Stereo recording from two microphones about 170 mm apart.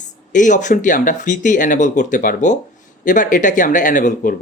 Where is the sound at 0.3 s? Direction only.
45° left (ahead or behind).